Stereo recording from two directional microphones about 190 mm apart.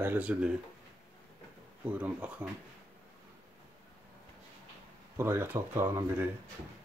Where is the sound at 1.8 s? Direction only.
5° right (ahead or behind).